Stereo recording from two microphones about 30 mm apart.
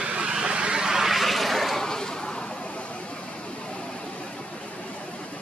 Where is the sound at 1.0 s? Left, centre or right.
Centre.